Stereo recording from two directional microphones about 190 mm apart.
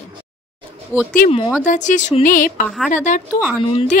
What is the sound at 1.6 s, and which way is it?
Speech, 40° left (ahead or behind).